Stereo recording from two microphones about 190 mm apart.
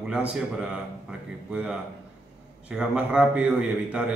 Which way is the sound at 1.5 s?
5° right (ahead or behind).